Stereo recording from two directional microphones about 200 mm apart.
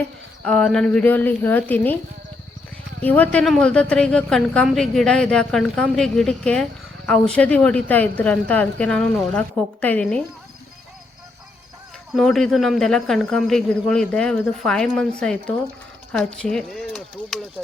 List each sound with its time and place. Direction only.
0.4 s a woman's voice: centre (ahead or behind)
3.0 s a woman's voice: 10° left (ahead or behind)
12.1 s a woman's voice: centre (ahead or behind)